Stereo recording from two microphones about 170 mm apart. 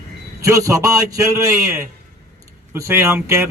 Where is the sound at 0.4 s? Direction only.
20° right (ahead or behind).